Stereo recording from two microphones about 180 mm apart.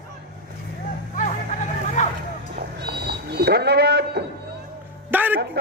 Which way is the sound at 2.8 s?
65° right (ahead or behind).